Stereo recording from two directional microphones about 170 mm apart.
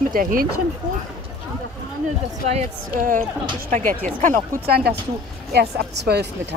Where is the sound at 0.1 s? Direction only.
55° right (ahead or behind).